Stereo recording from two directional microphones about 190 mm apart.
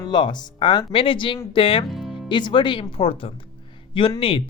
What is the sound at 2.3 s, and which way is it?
Speech, 25° left (ahead or behind).